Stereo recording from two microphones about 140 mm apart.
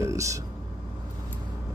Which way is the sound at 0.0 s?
20° right (ahead or behind).